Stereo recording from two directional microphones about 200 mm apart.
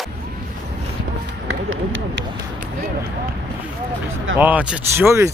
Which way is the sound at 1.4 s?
80° right.